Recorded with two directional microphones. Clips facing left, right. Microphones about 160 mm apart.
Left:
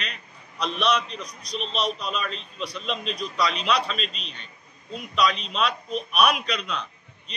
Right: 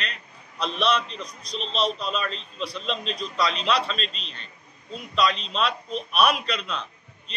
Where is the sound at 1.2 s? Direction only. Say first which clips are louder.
Left 1 dB; 25° right (ahead or behind).